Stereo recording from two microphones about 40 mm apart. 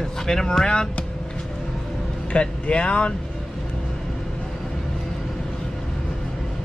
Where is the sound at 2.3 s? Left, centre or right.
Left.